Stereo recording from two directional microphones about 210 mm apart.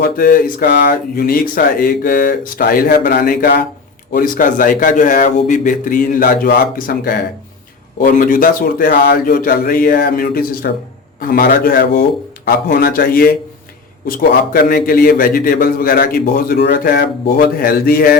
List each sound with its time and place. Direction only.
0.0 s a man's voice: 45° left (ahead or behind)